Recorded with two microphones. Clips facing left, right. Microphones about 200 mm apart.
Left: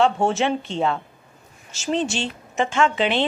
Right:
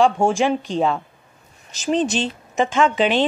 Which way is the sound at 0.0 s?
10° right (ahead or behind).